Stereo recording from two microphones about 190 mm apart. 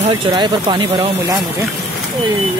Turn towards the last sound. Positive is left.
turn(degrees=-25)  # may be behind; listen again after turning